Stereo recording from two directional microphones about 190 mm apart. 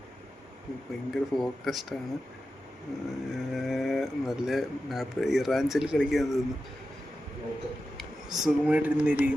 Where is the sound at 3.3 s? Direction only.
Centre (ahead or behind).